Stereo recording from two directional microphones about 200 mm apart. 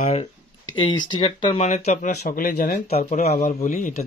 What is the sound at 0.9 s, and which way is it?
Speech, 25° left (ahead or behind).